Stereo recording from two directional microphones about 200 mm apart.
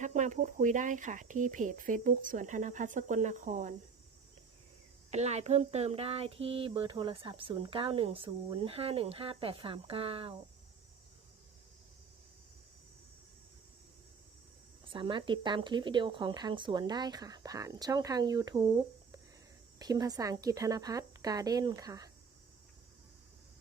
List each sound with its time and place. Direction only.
0.0 s speech: 40° right (ahead or behind)
5.1 s speech: 35° right (ahead or behind)
14.8 s speech: 25° right (ahead or behind)
19.8 s speech: 20° right (ahead or behind)